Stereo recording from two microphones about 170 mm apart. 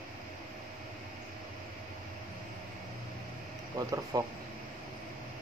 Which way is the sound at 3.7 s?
20° right (ahead or behind).